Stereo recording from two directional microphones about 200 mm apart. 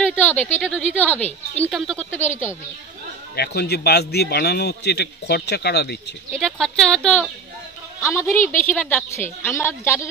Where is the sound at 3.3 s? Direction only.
55° left (ahead or behind).